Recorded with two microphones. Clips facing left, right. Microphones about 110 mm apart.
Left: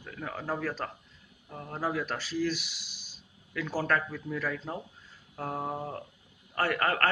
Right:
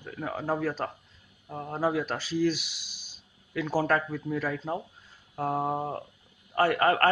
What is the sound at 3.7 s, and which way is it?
Speech, 20° right (ahead or behind).